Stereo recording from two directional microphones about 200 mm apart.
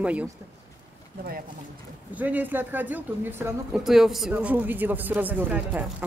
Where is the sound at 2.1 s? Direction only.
10° right (ahead or behind).